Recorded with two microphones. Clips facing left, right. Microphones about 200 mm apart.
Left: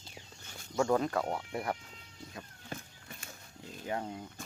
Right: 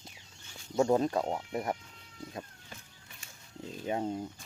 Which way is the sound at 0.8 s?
25° right (ahead or behind).